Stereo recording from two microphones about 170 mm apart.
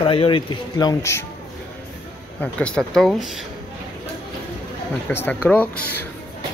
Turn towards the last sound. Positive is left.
turn(degrees=10)  # may be behind; listen again after turning